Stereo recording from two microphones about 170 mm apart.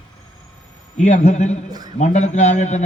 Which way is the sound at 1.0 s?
45° left (ahead or behind).